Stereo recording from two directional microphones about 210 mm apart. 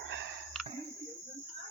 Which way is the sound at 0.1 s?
55° right (ahead or behind).